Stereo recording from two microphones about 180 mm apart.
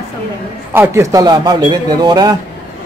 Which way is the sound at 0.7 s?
15° right (ahead or behind).